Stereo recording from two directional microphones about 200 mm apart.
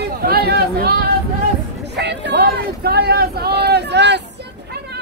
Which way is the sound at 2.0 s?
55° right (ahead or behind).